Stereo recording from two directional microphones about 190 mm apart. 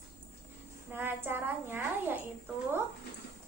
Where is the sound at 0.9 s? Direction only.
10° right (ahead or behind).